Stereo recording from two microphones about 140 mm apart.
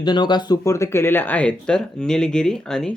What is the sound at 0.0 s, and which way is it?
Speech, 35° left (ahead or behind).